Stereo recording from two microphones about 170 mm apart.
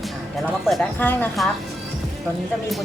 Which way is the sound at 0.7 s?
Centre (ahead or behind).